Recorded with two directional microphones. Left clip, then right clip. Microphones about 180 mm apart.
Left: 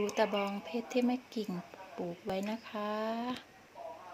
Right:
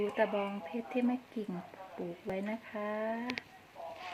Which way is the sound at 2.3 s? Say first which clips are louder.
Left 1 dB; 20° left (ahead or behind).